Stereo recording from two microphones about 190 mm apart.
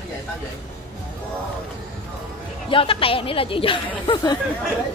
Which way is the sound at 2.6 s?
25° left (ahead or behind).